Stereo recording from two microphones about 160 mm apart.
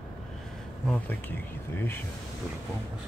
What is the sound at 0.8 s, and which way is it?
Speech, 10° left (ahead or behind).